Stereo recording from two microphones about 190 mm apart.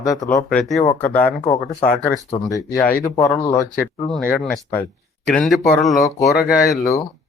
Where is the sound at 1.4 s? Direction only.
25° left (ahead or behind).